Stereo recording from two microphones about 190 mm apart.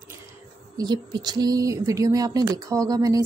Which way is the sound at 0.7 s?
25° right (ahead or behind).